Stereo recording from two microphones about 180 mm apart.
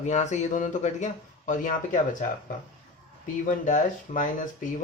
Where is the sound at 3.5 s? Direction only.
45° left (ahead or behind).